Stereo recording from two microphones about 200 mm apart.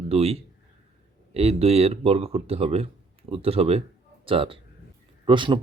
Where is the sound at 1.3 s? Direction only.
30° right (ahead or behind).